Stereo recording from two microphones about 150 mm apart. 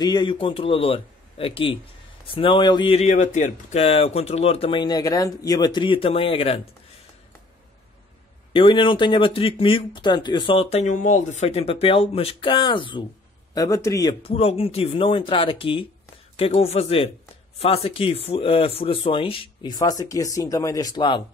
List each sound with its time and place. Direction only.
0.0 s speech: 30° left (ahead or behind)
3.2 s speech: 50° left (ahead or behind)
8.5 s speech: 35° left (ahead or behind)
13.6 s a man's voice: 20° left (ahead or behind)
14.2 s speech: 40° left (ahead or behind)